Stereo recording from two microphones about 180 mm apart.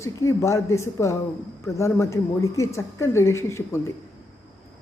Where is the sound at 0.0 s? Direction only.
15° left (ahead or behind).